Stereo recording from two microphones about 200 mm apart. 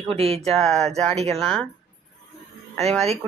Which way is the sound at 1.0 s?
35° right (ahead or behind).